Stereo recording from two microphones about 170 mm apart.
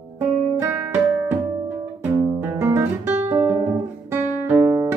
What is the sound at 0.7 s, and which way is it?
Music, 10° right (ahead or behind).